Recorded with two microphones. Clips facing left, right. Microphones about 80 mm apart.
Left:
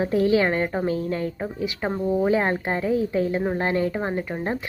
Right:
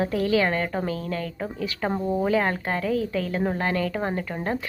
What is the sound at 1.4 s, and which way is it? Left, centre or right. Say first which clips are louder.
Speech: left 1 dB; centre.